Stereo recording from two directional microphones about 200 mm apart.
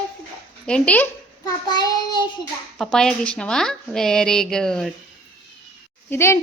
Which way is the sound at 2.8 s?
5° left (ahead or behind).